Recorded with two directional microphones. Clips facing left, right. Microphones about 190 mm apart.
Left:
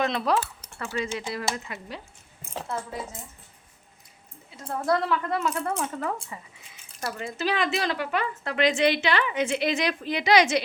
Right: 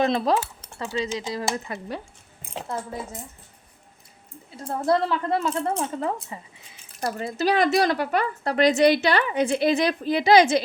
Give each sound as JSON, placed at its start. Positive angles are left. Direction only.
{"t": 0.0, "sound": "speech", "side_deg": -30}
{"t": 1.5, "sound": "speech", "side_deg": -35}
{"t": 2.4, "sound": "speech", "side_deg": -20}
{"t": 4.5, "sound": "speech", "side_deg": -30}
{"t": 7.0, "sound": "speech", "side_deg": -35}